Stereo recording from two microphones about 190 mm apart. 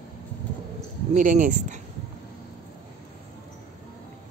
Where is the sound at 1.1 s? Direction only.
45° right (ahead or behind).